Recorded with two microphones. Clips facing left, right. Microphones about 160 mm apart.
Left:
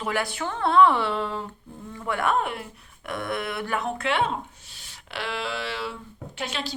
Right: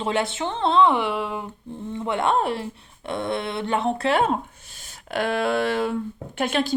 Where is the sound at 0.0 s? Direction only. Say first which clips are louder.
Right 4 dB; 25° right (ahead or behind).